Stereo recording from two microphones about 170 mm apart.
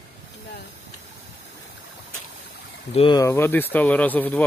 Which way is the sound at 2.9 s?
35° left (ahead or behind).